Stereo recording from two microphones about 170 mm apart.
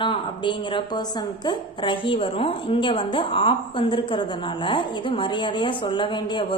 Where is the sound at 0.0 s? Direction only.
30° left (ahead or behind).